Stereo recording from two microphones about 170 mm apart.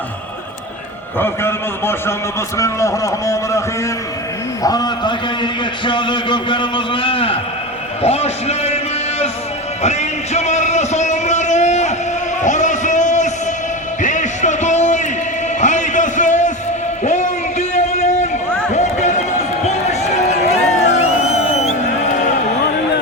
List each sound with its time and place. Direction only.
1.2 s a man's voice: 15° left (ahead or behind)
4.6 s a man's voice: 25° left (ahead or behind)
9.8 s music: 40° left (ahead or behind)
12.4 s a sound: 45° left (ahead or behind)